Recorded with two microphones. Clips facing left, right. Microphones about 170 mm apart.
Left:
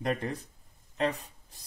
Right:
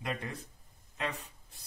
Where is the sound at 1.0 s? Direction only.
40° left (ahead or behind).